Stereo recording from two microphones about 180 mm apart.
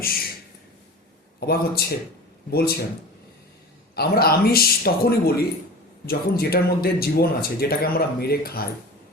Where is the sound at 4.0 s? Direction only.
60° left (ahead or behind).